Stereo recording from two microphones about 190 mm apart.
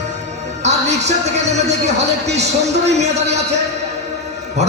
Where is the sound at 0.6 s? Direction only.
35° right (ahead or behind).